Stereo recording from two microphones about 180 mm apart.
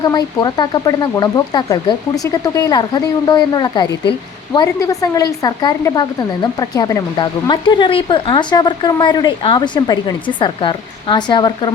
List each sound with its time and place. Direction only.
0.0 s speech: 20° left (ahead or behind)